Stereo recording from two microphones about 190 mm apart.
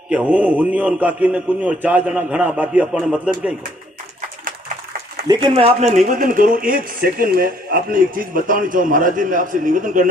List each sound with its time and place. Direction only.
0.1 s a man's voice: 5° right (ahead or behind)
5.3 s speech: 25° right (ahead or behind); by 10.1 s 45° right (ahead or behind)